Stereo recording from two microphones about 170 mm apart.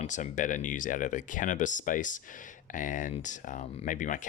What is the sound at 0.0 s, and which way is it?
Speech, 45° left (ahead or behind).